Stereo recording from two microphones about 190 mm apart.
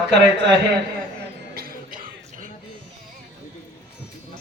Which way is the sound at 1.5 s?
50° right (ahead or behind).